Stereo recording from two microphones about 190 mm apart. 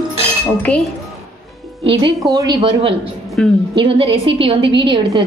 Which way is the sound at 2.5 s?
30° right (ahead or behind).